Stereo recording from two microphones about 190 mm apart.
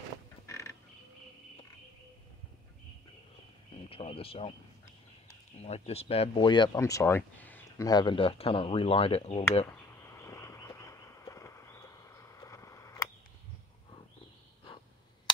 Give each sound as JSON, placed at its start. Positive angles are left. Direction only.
{"t": 0.5, "sound": "creak", "side_deg": 15}
{"t": 3.9, "sound": "speech", "side_deg": 30}
{"t": 9.7, "sound": "a sound", "side_deg": 15}